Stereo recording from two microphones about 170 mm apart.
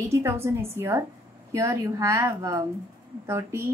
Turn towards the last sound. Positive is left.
turn(degrees=-15)  # may be behind; listen again after turning